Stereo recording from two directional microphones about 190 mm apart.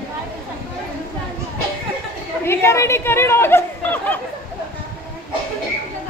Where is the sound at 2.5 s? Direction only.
15° left (ahead or behind).